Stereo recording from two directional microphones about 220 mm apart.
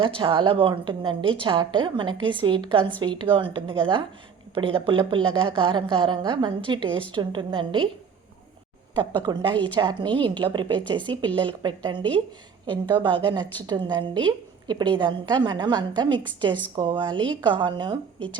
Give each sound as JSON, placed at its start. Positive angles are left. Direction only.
{"t": 0.0, "sound": "a woman's voice", "side_deg": -25}
{"t": 9.0, "sound": "a woman's voice", "side_deg": -20}